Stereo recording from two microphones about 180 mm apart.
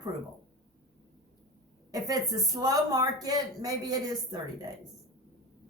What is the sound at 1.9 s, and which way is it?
A woman's voice, 20° right (ahead or behind).